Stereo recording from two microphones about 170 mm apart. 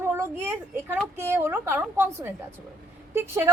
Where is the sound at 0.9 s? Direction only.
10° right (ahead or behind).